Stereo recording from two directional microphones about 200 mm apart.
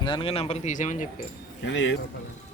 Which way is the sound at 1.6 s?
65° left (ahead or behind).